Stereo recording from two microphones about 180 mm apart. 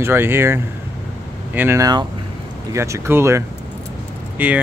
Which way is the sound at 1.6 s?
15° right (ahead or behind).